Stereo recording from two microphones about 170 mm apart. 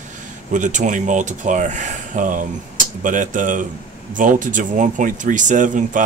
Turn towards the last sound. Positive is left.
turn(degrees=-50)  # may be behind; listen again after turning